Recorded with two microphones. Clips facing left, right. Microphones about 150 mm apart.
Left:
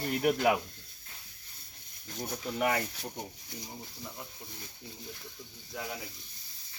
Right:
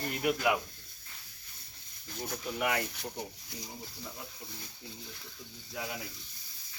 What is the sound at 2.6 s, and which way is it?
Speech, 45° left (ahead or behind).